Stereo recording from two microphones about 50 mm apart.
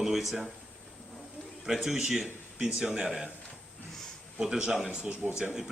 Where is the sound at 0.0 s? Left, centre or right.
Centre.